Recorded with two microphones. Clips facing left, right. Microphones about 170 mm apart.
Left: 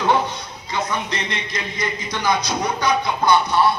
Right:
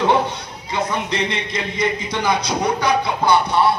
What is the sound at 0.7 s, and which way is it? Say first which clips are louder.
A man's voice: right 2 dB; 30° right (ahead or behind).